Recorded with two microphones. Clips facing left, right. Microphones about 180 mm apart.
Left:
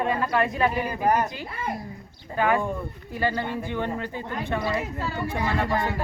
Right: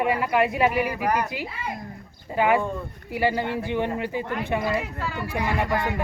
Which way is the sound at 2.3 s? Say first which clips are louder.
Right 2 dB; 15° right (ahead or behind).